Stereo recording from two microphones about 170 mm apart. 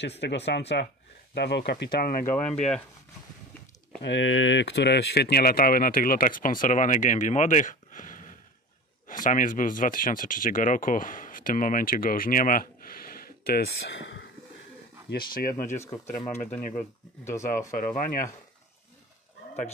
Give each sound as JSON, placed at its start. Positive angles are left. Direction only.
{"t": 0.0, "sound": "speech", "side_deg": 90}
{"t": 4.0, "sound": "speech", "side_deg": 90}
{"t": 13.8, "sound": "speech", "side_deg": 90}
{"t": 15.0, "sound": "speech", "side_deg": 60}
{"t": 17.2, "sound": "speech", "side_deg": 15}
{"t": 17.6, "sound": "speech", "side_deg": 50}